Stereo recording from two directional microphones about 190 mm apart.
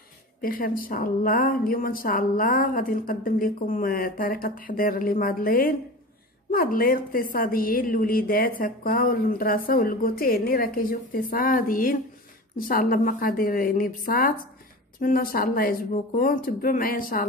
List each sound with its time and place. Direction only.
0.4 s a woman's voice: 50° left (ahead or behind)